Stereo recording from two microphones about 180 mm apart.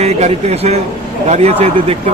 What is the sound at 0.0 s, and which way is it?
A man's voice, 35° right (ahead or behind).